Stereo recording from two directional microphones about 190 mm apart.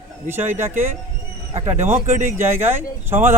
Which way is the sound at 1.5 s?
30° right (ahead or behind).